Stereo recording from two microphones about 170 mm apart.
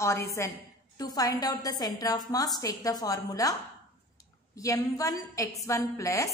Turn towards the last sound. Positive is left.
turn(degrees=20)  # may be behind; listen again after turning